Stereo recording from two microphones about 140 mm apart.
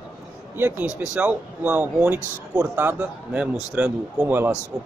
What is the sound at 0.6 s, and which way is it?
Speech, 15° right (ahead or behind).